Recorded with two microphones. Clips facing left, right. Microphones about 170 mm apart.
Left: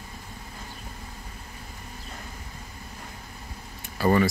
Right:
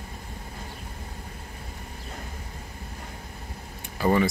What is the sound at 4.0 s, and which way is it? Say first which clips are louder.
Speech: left 1 dB; 15° right (ahead or behind).